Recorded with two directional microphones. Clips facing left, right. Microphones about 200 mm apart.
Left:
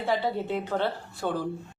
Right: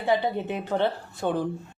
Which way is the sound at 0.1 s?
20° right (ahead or behind).